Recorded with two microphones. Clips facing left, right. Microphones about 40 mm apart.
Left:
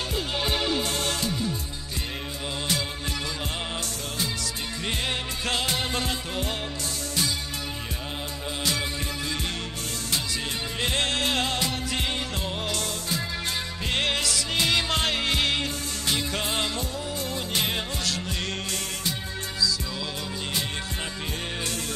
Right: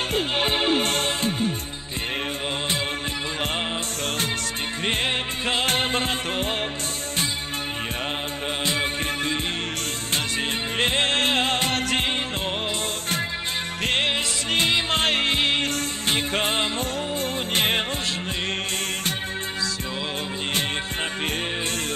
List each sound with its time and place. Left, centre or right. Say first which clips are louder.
0.1 s music: right 4 dB; right
4.8 s music: right 5 dB; right
8.6 s music: right 3 dB; right
10.8 s music: right 4 dB; right
14.0 s music: right 2 dB; right